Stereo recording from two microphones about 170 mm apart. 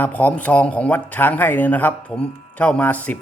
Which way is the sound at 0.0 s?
10° left (ahead or behind).